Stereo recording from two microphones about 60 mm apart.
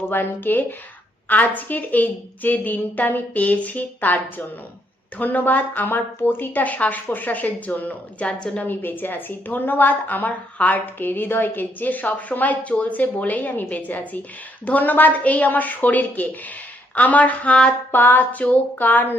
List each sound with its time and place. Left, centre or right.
0.1 s a woman's voice: left; by 8.6 s centre
8.6 s a woman's voice: left